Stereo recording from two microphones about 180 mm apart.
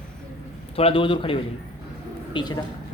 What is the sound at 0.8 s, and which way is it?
A man's voice, 30° left (ahead or behind).